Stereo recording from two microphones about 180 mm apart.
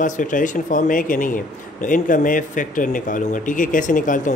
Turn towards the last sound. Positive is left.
turn(degrees=45)  # may be behind; listen again after turning